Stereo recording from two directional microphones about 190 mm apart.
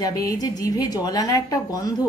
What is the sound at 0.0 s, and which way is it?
Speech, 20° left (ahead or behind).